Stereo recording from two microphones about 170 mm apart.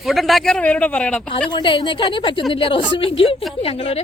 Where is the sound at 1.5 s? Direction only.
30° left (ahead or behind).